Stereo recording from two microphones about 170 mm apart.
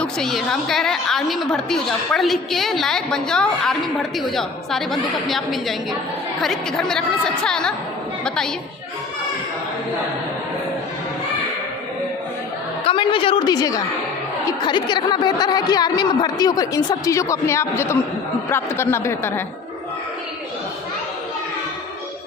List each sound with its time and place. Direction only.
0.0 s a woman's voice: 5° left (ahead or behind)
12.8 s a woman's voice: 30° left (ahead or behind); by 19.4 s 15° left (ahead or behind)